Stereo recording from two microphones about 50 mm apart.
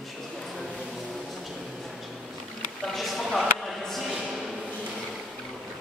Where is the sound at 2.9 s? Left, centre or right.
Centre.